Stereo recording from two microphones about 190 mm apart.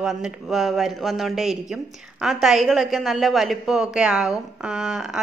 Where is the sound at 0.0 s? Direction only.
Centre (ahead or behind).